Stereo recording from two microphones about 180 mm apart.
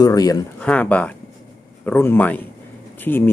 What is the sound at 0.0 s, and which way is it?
Speech, 20° left (ahead or behind).